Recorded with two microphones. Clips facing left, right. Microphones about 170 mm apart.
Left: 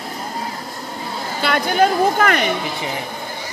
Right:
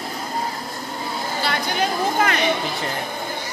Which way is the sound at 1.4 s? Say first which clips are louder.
Left 8 dB; 55° left (ahead or behind).